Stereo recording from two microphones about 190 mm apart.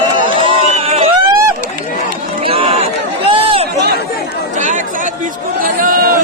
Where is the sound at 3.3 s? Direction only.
30° right (ahead or behind).